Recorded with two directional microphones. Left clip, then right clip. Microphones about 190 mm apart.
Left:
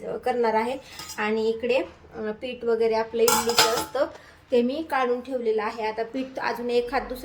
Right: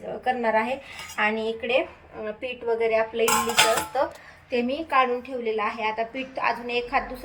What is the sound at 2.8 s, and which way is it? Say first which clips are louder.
Dishes: right 3 dB; 5° right (ahead or behind).